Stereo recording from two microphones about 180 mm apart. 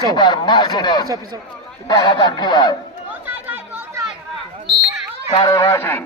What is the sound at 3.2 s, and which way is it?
Chatter, 10° right (ahead or behind).